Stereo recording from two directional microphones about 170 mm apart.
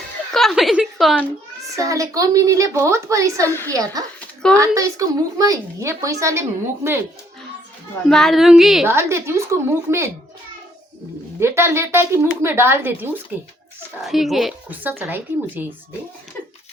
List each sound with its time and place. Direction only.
0.3 s a woman's voice: centre (ahead or behind)
1.7 s a woman's voice: 20° right (ahead or behind)
3.4 s a woman's voice: 15° left (ahead or behind)
3.7 s a woman's voice: 20° right (ahead or behind)
8.1 s speech: centre (ahead or behind)
8.9 s a woman's voice: 15° right (ahead or behind)
11.3 s a woman's voice: 15° right (ahead or behind)
14.0 s speech: centre (ahead or behind)